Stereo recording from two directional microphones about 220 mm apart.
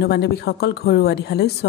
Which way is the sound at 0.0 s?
50° left (ahead or behind).